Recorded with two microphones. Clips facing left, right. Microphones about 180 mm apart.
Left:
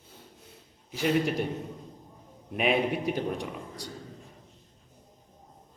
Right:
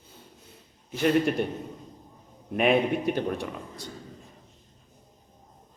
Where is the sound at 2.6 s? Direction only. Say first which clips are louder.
Right 4 dB; 50° right (ahead or behind).